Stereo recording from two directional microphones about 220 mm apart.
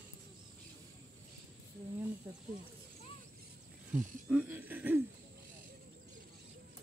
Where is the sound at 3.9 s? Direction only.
5° right (ahead or behind).